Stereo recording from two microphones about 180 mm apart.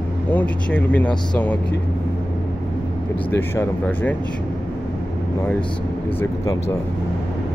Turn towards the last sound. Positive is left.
turn(degrees=20)  # may be behind; listen again after turning